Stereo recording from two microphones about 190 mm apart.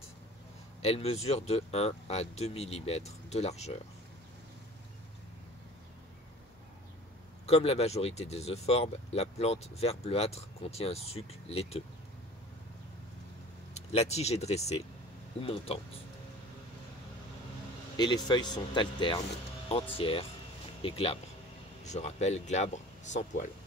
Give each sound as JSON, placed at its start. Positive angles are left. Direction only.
{"t": 0.8, "sound": "speech", "side_deg": 30}
{"t": 7.4, "sound": "speech", "side_deg": 35}
{"t": 13.7, "sound": "speech", "side_deg": 35}
{"t": 17.9, "sound": "speech", "side_deg": 20}